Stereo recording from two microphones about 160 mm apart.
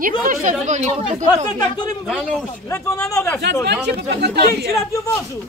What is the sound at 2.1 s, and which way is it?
Speech, 5° left (ahead or behind).